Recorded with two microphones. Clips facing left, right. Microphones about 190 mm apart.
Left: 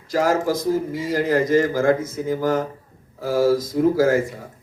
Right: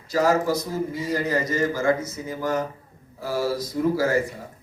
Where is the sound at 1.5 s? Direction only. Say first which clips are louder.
Left 5 dB; 55° left (ahead or behind).